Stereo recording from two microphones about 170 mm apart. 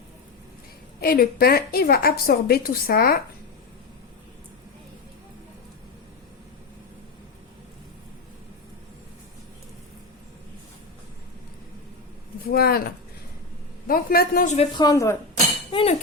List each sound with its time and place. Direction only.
0.9 s a woman's voice: 60° left (ahead or behind)
12.5 s a woman's voice: 65° left (ahead or behind)
13.8 s a woman's voice: 60° left (ahead or behind)
14.4 s speech: 40° left (ahead or behind)
14.8 s speech: 20° left (ahead or behind)
15.7 s chink: 35° left (ahead or behind)